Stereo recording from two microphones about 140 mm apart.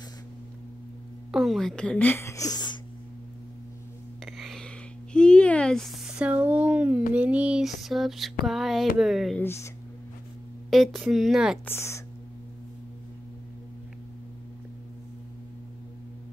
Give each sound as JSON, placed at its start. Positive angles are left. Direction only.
{"t": 1.3, "sound": "a woman's voice", "side_deg": 0}
{"t": 4.2, "sound": "music", "side_deg": 0}
{"t": 5.1, "sound": "a sound", "side_deg": 5}
{"t": 9.4, "sound": "a woman's voice", "side_deg": 15}
{"t": 10.7, "sound": "a sound", "side_deg": 0}
{"t": 11.6, "sound": "a woman's voice", "side_deg": 20}